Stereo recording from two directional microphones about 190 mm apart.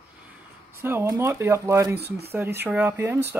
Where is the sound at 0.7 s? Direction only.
10° right (ahead or behind).